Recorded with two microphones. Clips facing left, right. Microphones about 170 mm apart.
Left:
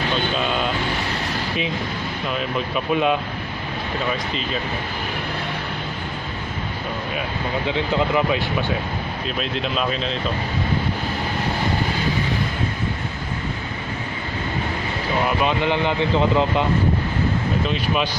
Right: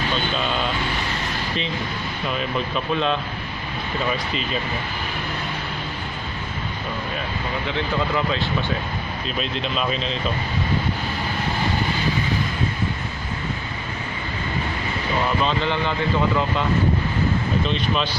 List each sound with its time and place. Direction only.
2.2 s speech: centre (ahead or behind)
2.9 s speech: 10° left (ahead or behind)
7.6 s speech: 15° left (ahead or behind)
9.4 s speech: centre (ahead or behind)
15.2 s speech: 15° left (ahead or behind)